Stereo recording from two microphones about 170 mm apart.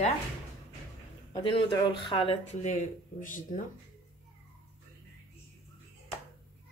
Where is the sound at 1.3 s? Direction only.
30° left (ahead or behind); by 3.6 s 50° left (ahead or behind).